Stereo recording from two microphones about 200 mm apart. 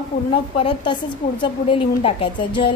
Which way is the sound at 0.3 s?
25° left (ahead or behind).